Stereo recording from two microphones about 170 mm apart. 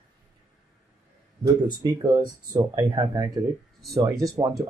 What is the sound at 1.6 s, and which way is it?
Speech, 25° right (ahead or behind).